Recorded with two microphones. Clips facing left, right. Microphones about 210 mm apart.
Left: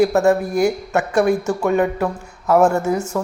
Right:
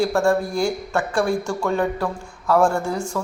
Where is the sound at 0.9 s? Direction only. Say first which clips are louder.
Left 4 dB; 20° left (ahead or behind).